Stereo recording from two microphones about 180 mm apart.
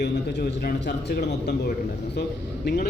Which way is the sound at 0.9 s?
60° left (ahead or behind).